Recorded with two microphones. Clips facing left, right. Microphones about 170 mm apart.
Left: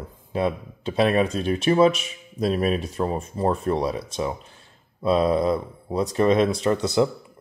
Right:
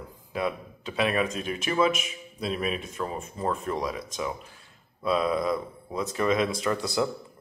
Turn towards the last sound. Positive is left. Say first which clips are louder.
# left 6 dB
turn(degrees=25)  # may be behind; listen again after turning